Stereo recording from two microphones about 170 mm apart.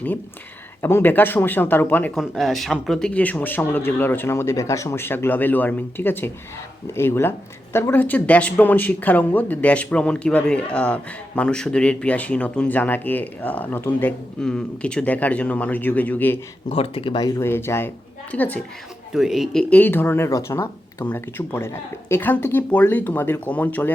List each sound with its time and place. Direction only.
0.8 s speech: 15° left (ahead or behind)
2.1 s speech: centre (ahead or behind)
16.6 s speech: 35° left (ahead or behind); by 18.6 s 10° left (ahead or behind)
19.1 s speech: centre (ahead or behind)